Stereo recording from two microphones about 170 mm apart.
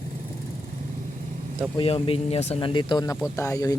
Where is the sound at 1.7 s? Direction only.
35° left (ahead or behind).